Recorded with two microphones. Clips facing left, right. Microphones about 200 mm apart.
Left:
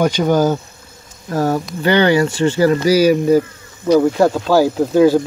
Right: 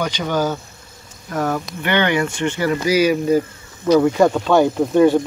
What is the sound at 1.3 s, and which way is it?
Speech, 30° left (ahead or behind).